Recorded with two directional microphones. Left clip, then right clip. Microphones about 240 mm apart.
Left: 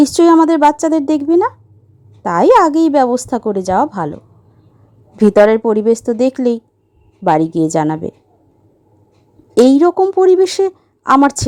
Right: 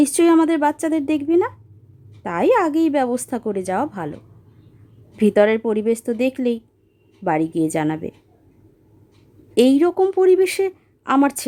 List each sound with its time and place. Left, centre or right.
0.0 s speech: centre
5.1 s speech: centre
9.6 s speech: centre